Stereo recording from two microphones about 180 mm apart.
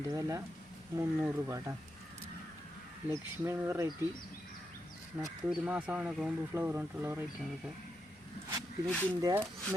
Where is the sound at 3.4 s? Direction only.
15° right (ahead or behind).